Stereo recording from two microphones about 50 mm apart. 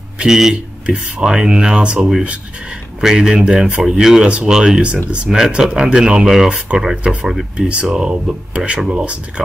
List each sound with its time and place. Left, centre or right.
0.2 s speech: centre
2.0 s speech: centre
7.0 s speech: right